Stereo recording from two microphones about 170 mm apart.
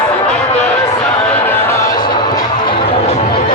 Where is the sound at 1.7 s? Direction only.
20° left (ahead or behind); by 3.5 s 40° left (ahead or behind).